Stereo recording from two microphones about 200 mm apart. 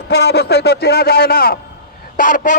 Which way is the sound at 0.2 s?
55° left (ahead or behind).